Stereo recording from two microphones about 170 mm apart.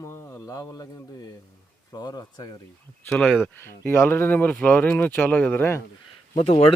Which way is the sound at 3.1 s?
5° left (ahead or behind).